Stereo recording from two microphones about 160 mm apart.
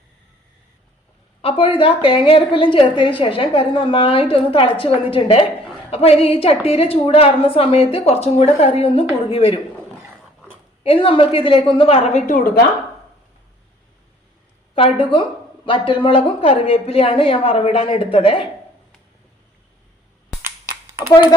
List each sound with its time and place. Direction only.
1.4 s speech: 35° left (ahead or behind)
10.8 s speech: 35° left (ahead or behind)
12.2 s a woman's voice: 65° left (ahead or behind)
14.8 s speech: 35° left (ahead or behind)